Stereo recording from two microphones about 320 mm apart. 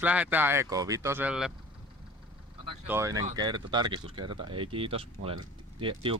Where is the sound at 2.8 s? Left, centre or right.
Centre.